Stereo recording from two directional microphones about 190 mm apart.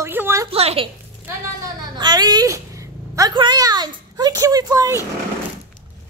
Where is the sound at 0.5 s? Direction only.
30° right (ahead or behind).